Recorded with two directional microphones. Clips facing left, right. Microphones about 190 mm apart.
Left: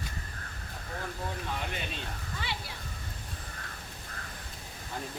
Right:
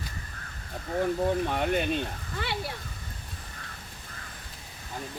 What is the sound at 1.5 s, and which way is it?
Speech, 55° right (ahead or behind).